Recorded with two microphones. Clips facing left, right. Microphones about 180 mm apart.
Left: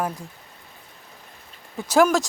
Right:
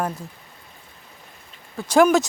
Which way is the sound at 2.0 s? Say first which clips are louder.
Right 2 dB; centre (ahead or behind).